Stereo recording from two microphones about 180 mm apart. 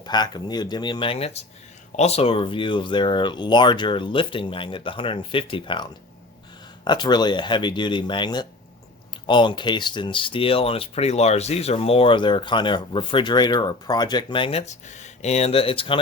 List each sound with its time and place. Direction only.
0.0 s speech: 25° left (ahead or behind)